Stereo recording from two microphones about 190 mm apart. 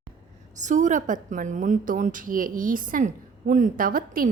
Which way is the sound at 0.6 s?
40° right (ahead or behind).